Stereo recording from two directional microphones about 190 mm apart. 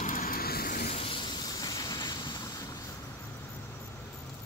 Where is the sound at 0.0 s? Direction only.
45° left (ahead or behind); by 2.6 s 20° left (ahead or behind).